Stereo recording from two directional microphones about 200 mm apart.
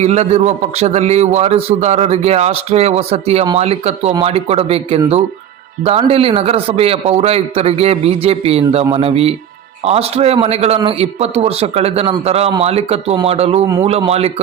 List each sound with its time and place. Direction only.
0.0 s a man's voice: 35° right (ahead or behind)